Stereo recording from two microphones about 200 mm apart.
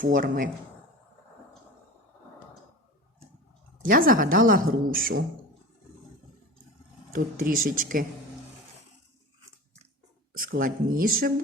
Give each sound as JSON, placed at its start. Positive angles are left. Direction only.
{"t": 0.0, "sound": "speech", "side_deg": -45}
{"t": 3.8, "sound": "speech", "side_deg": -45}
{"t": 7.1, "sound": "speech", "side_deg": -45}
{"t": 10.3, "sound": "speech", "side_deg": -45}